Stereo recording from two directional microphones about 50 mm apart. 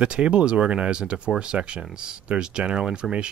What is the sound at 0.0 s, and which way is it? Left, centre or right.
Speech, right.